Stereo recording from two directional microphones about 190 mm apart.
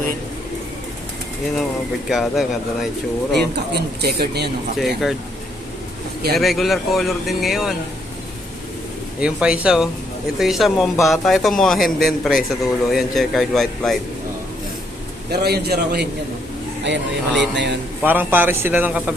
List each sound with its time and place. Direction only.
2.0 s a man's voice: centre (ahead or behind)
3.3 s speech: 60° right (ahead or behind)
4.8 s a man's voice: centre (ahead or behind)
6.3 s a man's voice: centre (ahead or behind)
9.2 s a man's voice: 5° right (ahead or behind)
15.3 s speech: 55° right (ahead or behind)
16.8 s speech: 70° right (ahead or behind)
18.0 s speech: 10° right (ahead or behind)